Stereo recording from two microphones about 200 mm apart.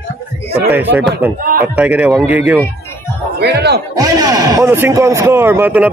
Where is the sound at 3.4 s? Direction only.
55° right (ahead or behind).